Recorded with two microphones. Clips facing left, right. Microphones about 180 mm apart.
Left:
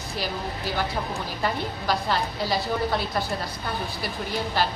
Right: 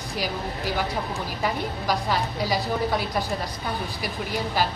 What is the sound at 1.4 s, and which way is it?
A woman's voice, 10° right (ahead or behind).